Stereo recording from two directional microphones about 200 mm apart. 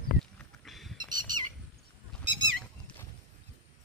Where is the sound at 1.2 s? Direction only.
20° right (ahead or behind).